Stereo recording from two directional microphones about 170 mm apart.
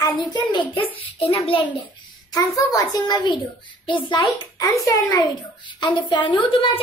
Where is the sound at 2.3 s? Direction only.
20° left (ahead or behind).